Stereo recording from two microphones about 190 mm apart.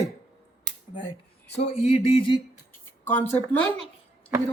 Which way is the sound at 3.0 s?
10° left (ahead or behind).